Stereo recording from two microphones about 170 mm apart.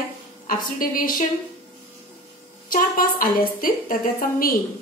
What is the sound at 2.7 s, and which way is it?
A woman's voice, 55° left (ahead or behind).